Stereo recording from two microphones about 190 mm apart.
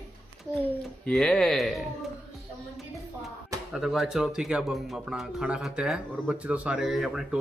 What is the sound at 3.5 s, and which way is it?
Music, 15° right (ahead or behind).